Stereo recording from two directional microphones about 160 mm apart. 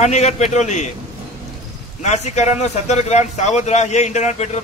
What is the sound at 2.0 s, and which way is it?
Speech, 45° left (ahead or behind).